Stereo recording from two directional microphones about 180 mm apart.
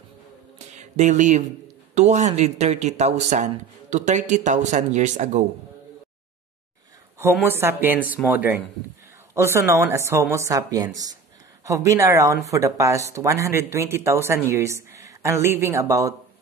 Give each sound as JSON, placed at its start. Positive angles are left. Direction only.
{"t": 0.7, "sound": "speech", "side_deg": -40}
{"t": 7.4, "sound": "speech", "side_deg": -15}